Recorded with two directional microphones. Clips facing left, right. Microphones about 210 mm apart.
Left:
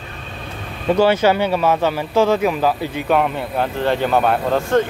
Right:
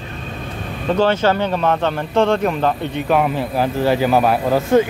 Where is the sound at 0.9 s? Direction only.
10° left (ahead or behind); by 4.8 s 5° right (ahead or behind).